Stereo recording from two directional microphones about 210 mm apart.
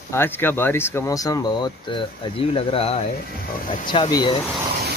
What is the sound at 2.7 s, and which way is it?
Speech, 30° left (ahead or behind).